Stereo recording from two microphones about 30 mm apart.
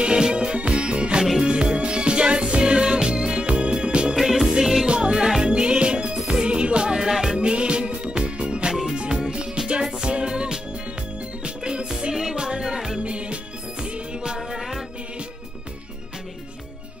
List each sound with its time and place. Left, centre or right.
0.0 s music: right
4.1 s music: centre
4.8 s music: right
6.9 s music: centre
7.3 s music: right
13.0 s music: right
14.2 s music: right